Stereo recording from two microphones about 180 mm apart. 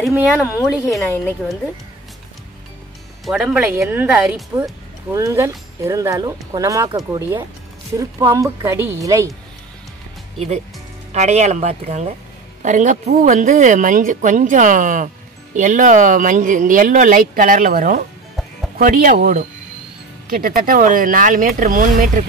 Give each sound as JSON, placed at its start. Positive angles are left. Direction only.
{"t": 0.0, "sound": "speech", "side_deg": 0}
{"t": 1.0, "sound": "a woman's voice", "side_deg": 15}
{"t": 3.3, "sound": "speech", "side_deg": 0}
{"t": 11.1, "sound": "speech", "side_deg": -40}